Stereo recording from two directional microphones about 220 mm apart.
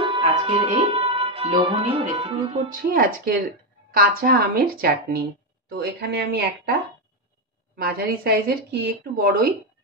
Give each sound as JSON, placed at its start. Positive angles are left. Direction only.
{"t": 0.0, "sound": "speech", "side_deg": -25}
{"t": 2.9, "sound": "a woman's voice", "side_deg": -40}
{"t": 7.7, "sound": "a woman's voice", "side_deg": -45}